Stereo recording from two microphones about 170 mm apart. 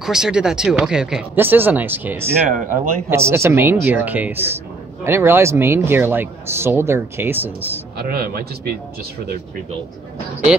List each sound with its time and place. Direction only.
0.0 s speech: 5° right (ahead or behind)
2.5 s speech: 50° right (ahead or behind)
3.1 s a man's voice: 15° right (ahead or behind)
8.0 s a man's voice: 65° right (ahead or behind)